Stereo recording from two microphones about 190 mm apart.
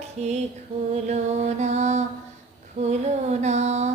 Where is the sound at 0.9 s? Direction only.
35° right (ahead or behind).